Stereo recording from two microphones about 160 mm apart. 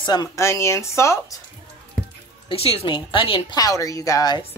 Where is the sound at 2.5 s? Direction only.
35° left (ahead or behind).